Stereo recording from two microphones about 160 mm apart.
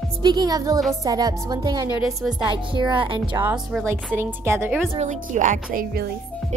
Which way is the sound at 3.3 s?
10° right (ahead or behind).